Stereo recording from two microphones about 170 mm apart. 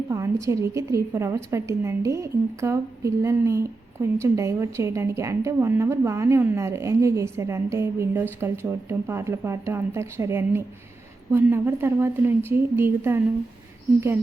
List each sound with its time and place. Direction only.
0.1 s a woman's voice: 20° right (ahead or behind)